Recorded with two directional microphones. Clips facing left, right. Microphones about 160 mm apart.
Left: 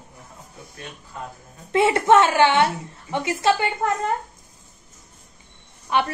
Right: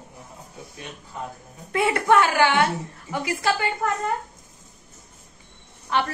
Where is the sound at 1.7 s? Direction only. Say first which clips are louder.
Left 3 dB; 25° left (ahead or behind).